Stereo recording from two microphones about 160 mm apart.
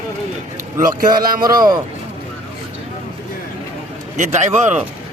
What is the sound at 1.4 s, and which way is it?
Speech, 25° right (ahead or behind).